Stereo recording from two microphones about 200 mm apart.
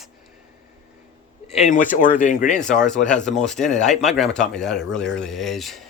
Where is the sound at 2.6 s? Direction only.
5° left (ahead or behind).